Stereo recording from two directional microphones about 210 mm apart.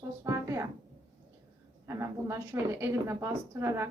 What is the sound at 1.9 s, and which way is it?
A woman's voice, 15° right (ahead or behind).